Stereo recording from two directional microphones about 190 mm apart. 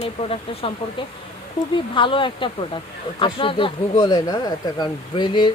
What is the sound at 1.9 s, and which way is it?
Speech, 25° left (ahead or behind).